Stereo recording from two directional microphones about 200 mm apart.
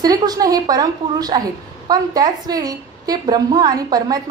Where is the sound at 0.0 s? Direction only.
20° right (ahead or behind).